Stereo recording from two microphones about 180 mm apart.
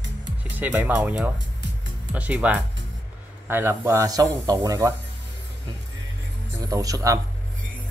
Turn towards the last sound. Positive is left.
turn(degrees=-20)  # may be behind; listen again after turning